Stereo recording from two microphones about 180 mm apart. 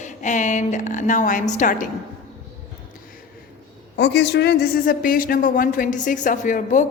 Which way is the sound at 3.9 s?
70° left (ahead or behind).